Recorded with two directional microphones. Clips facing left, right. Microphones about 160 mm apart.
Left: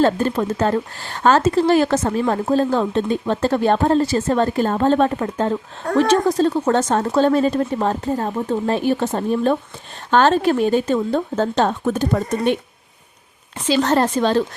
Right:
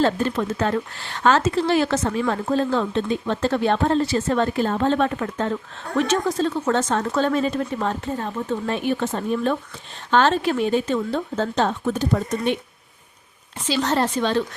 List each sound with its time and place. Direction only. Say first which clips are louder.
0.0 s speech: left 3 dB; 40° left (ahead or behind)
13.7 s speech: left 5 dB; 55° left (ahead or behind)